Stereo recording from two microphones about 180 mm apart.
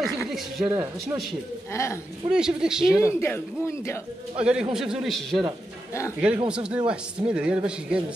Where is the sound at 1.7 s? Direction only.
15° left (ahead or behind).